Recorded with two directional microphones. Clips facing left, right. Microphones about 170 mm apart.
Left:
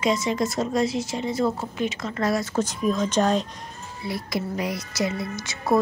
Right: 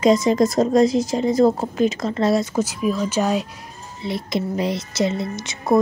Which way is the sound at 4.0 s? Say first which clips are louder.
Right 4 dB; 20° right (ahead or behind).